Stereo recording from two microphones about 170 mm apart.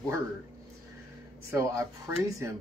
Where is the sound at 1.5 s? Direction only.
15° right (ahead or behind).